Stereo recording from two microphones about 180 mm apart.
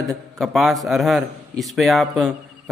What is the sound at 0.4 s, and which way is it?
A man's voice, centre (ahead or behind).